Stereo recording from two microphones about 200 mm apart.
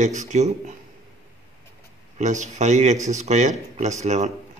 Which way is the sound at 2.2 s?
35° right (ahead or behind).